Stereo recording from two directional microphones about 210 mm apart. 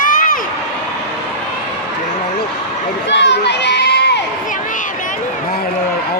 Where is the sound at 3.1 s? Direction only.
55° left (ahead or behind).